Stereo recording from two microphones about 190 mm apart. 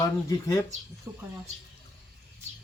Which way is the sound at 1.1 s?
15° right (ahead or behind).